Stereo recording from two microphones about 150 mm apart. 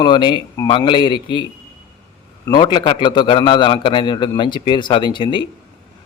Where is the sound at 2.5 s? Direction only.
30° left (ahead or behind).